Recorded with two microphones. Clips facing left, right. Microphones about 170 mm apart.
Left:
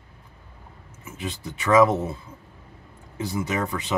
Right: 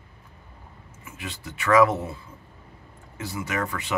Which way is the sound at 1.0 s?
20° left (ahead or behind).